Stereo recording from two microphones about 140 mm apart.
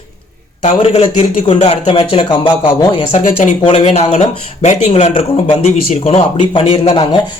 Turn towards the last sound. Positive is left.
turn(degrees=35)  # may be behind; listen again after turning